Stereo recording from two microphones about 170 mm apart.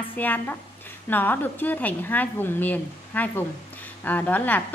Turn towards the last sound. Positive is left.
turn(degrees=10)  # may be behind; listen again after turning